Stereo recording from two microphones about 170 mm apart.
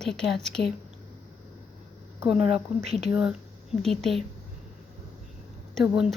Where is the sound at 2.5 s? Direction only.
40° right (ahead or behind).